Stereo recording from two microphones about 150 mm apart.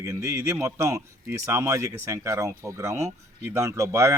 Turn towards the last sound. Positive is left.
turn(degrees=-20)  # may be behind; listen again after turning